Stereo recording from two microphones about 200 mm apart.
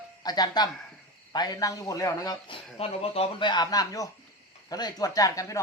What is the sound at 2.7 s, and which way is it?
Speech, 30° left (ahead or behind).